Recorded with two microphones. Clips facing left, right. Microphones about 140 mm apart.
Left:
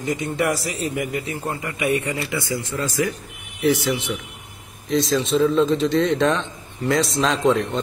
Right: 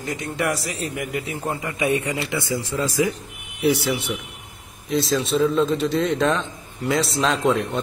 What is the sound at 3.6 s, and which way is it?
A man's voice, 10° right (ahead or behind).